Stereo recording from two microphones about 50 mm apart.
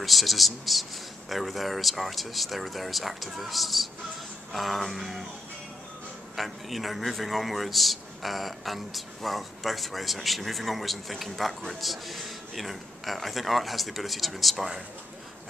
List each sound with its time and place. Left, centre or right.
0.0 s a man's voice: centre
6.3 s a man's voice: centre